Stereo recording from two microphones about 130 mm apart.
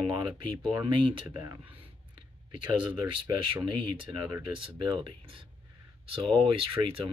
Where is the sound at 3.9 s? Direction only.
35° right (ahead or behind).